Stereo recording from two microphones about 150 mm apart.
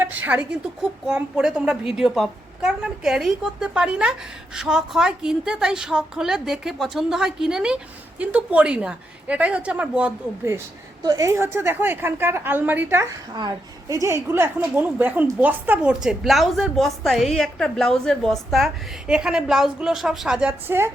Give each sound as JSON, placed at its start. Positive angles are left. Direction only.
{"t": 0.0, "sound": "a woman's voice", "side_deg": -10}
{"t": 11.0, "sound": "a woman's voice", "side_deg": -25}
{"t": 13.3, "sound": "a woman's voice", "side_deg": -25}